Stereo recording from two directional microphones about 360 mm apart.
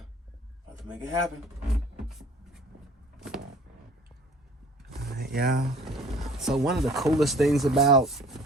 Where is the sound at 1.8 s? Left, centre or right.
Centre.